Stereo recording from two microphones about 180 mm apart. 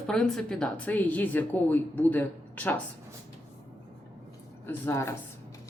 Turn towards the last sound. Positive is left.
turn(degrees=15)  # may be behind; listen again after turning